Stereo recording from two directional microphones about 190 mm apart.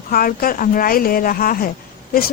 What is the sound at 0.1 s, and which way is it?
Speech, 50° left (ahead or behind).